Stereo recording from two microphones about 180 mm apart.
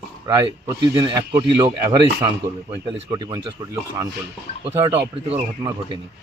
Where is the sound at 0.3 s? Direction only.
20° right (ahead or behind).